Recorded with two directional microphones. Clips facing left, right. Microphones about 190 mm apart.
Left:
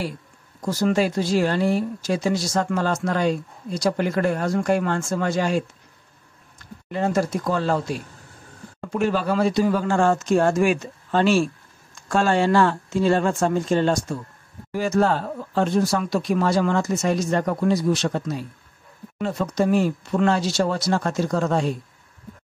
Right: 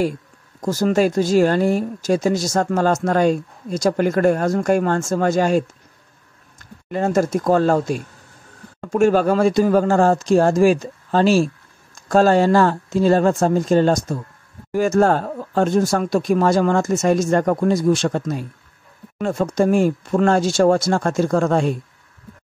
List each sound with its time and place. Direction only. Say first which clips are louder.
0.6 s speech: right 3 dB; 45° right (ahead or behind)
6.9 s speech: right 4 dB; 45° right (ahead or behind)